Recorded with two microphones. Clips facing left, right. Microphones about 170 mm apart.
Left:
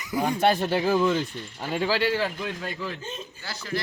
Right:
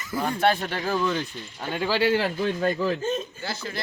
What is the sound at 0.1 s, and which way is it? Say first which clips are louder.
Speech: left 1 dB; 15° left (ahead or behind).